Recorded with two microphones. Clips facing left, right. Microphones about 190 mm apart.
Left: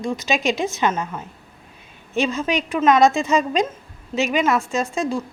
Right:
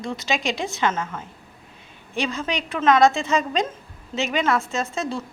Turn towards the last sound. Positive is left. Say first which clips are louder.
# left 3 dB
turn(degrees=15)  # may be behind; listen again after turning